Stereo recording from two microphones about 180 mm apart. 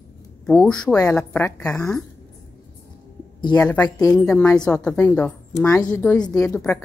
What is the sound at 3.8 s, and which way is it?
Speech, 20° left (ahead or behind).